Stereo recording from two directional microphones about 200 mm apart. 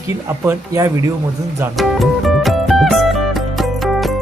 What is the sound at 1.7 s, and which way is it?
Music, centre (ahead or behind).